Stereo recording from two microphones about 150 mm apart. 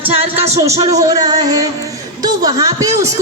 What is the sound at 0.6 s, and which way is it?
A woman's voice, 20° right (ahead or behind).